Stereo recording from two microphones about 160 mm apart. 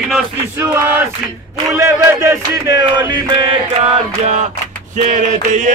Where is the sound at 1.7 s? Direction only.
20° right (ahead or behind); by 3.9 s 35° right (ahead or behind).